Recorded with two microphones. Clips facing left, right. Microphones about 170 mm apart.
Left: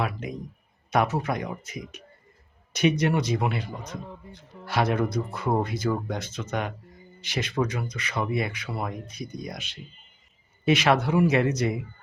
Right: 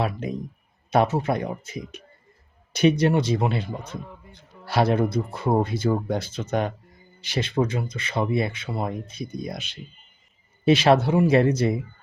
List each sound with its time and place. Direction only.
0.0 s speech: 30° right (ahead or behind)